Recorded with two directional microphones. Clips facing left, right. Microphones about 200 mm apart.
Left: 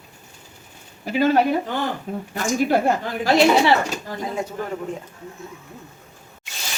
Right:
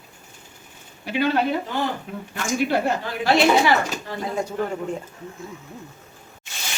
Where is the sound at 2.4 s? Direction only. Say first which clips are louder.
Left 2 dB; 40° left (ahead or behind).